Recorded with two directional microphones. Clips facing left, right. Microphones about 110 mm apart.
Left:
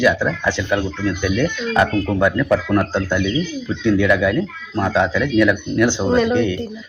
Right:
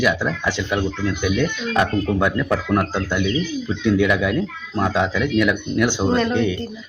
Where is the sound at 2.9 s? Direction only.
15° right (ahead or behind).